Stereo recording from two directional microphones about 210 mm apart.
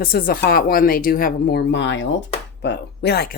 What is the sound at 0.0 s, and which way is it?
Speech, 45° left (ahead or behind).